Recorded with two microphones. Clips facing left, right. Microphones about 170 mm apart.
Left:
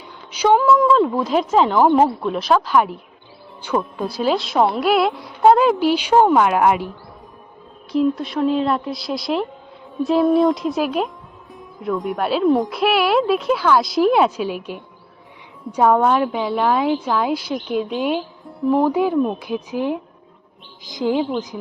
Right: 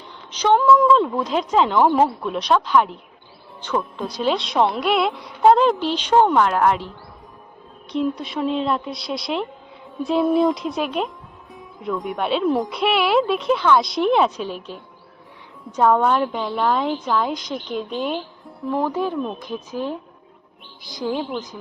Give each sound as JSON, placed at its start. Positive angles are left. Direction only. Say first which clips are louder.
{"t": 0.3, "sound": "a woman's voice", "louder": "left 1 dB", "side_deg": 10}
{"t": 7.9, "sound": "speech", "louder": "left 4 dB", "side_deg": 0}
{"t": 18.7, "sound": "speech", "louder": "left 6 dB", "side_deg": 15}